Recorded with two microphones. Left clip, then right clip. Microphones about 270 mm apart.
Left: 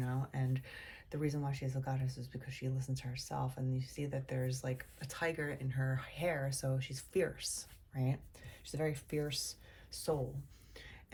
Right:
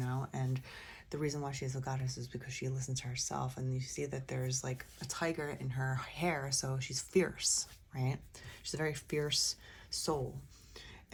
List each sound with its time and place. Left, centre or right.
0.0 s speech: centre